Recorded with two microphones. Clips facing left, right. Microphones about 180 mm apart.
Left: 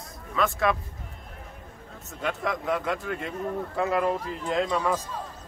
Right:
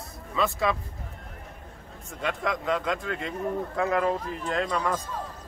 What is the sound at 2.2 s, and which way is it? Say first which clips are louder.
Speech: even; 5° left (ahead or behind).